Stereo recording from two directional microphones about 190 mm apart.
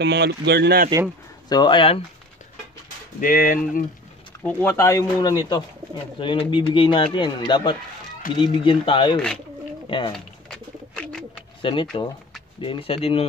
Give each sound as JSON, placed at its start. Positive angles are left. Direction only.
{"t": 0.0, "sound": "speech", "side_deg": -65}
{"t": 1.5, "sound": "speech", "side_deg": 25}
{"t": 3.2, "sound": "speech", "side_deg": 45}
{"t": 4.4, "sound": "speech", "side_deg": 10}
{"t": 10.1, "sound": "bird", "side_deg": 5}
{"t": 11.6, "sound": "speech", "side_deg": 25}